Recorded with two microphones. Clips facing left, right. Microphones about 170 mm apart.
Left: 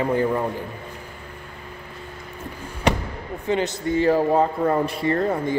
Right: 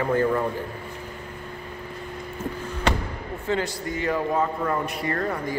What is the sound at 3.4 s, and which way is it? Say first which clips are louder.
Speech: left 4 dB; 20° left (ahead or behind).